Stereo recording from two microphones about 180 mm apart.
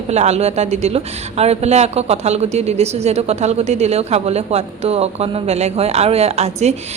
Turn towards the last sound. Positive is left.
turn(degrees=-35)  # may be behind; listen again after turning